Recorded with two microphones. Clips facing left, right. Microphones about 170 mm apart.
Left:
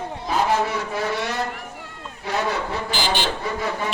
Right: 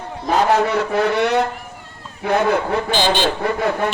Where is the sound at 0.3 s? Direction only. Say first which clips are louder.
Right 5 dB; 65° right (ahead or behind).